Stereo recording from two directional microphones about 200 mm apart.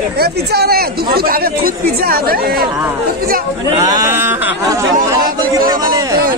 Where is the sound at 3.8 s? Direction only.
15° right (ahead or behind).